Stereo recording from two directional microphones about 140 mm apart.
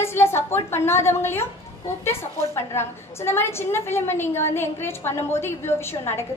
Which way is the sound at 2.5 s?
20° left (ahead or behind).